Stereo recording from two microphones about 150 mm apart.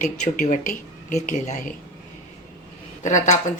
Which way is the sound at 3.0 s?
55° left (ahead or behind).